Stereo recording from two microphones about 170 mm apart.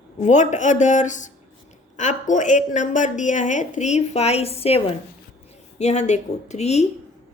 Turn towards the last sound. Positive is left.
turn(degrees=40)  # may be behind; listen again after turning